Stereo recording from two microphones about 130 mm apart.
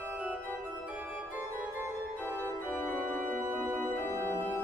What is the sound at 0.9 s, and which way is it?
Music, 10° right (ahead or behind).